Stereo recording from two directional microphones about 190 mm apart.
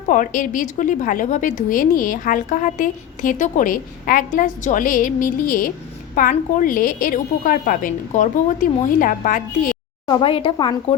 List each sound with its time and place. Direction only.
0.1 s a woman's voice: 45° left (ahead or behind)
10.1 s speech: 25° left (ahead or behind)